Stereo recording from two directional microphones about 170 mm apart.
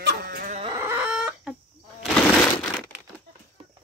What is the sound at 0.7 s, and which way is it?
Chicken, 10° right (ahead or behind).